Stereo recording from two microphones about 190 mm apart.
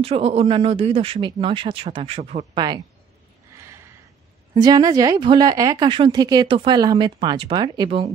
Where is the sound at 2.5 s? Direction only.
20° right (ahead or behind).